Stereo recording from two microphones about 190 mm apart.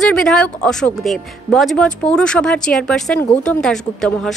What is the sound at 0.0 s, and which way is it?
Speech, 5° left (ahead or behind).